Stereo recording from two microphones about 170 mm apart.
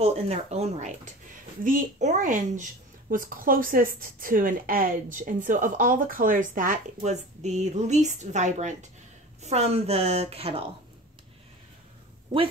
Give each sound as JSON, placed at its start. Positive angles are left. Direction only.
{"t": 0.0, "sound": "a woman's voice", "side_deg": -40}